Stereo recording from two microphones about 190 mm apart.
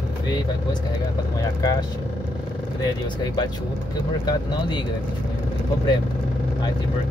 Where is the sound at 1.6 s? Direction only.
20° left (ahead or behind).